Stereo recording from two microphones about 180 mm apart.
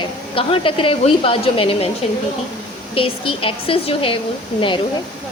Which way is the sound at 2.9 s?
30° left (ahead or behind).